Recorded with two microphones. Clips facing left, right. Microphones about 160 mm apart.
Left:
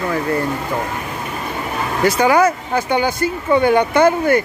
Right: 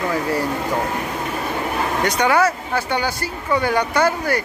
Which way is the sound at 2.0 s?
5° left (ahead or behind).